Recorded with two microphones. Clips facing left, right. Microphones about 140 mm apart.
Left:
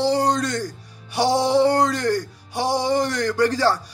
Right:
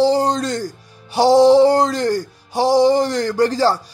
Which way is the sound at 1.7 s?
25° right (ahead or behind).